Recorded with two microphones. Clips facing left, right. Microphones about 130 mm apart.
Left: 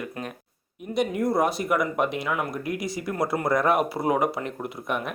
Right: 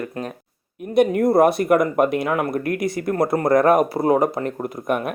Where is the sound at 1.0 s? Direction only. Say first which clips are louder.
Right 8 dB; 55° right (ahead or behind).